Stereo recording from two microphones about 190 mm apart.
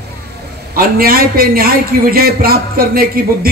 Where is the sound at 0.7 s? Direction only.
50° right (ahead or behind).